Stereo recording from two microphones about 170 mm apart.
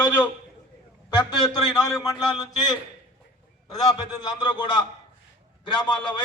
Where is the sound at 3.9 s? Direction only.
25° left (ahead or behind).